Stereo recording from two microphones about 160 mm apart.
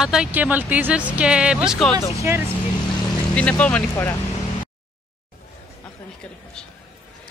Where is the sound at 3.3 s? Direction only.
5° left (ahead or behind).